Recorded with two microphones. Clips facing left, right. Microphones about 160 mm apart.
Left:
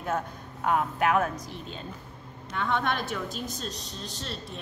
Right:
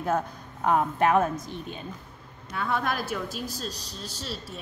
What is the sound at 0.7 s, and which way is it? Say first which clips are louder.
A woman's voice: right 3 dB; 35° right (ahead or behind).